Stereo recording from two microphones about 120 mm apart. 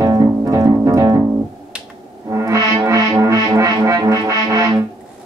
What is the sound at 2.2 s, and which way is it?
Music, 25° right (ahead or behind).